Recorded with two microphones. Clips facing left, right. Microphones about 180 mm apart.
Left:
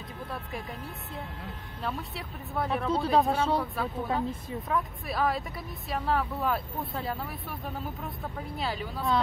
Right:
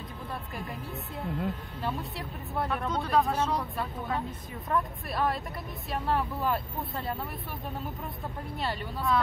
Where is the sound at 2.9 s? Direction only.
30° left (ahead or behind).